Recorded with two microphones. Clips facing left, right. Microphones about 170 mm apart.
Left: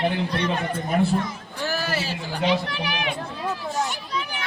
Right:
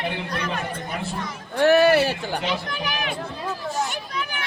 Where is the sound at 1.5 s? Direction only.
65° right (ahead or behind); by 3.1 s 45° right (ahead or behind).